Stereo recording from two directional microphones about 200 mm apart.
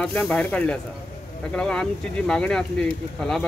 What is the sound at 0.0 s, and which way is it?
Speech, 5° left (ahead or behind).